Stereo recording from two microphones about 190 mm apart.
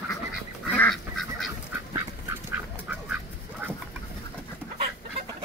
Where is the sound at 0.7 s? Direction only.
Centre (ahead or behind).